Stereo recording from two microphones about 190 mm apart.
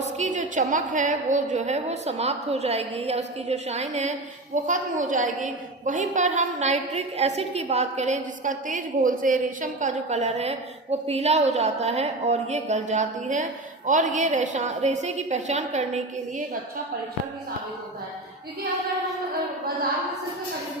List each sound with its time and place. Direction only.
0.0 s a woman's voice: 40° right (ahead or behind)